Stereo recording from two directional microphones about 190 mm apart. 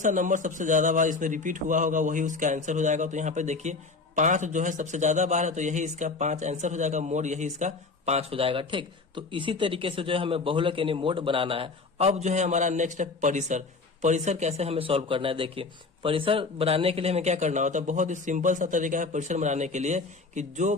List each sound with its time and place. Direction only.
0.0 s a man's voice: 40° right (ahead or behind)